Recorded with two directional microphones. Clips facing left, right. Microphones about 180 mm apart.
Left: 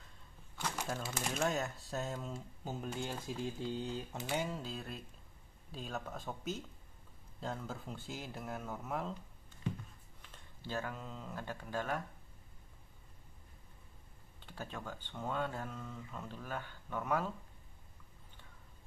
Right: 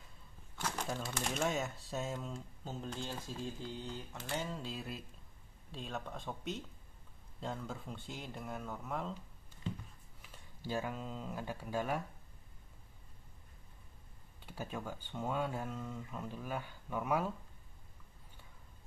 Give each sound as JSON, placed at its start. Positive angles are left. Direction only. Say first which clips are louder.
{"t": 0.6, "sound": "speech", "louder": "even", "side_deg": 0}
{"t": 10.2, "sound": "speech", "louder": "right 3 dB", "side_deg": -10}
{"t": 14.4, "sound": "speech", "louder": "right 3 dB", "side_deg": -10}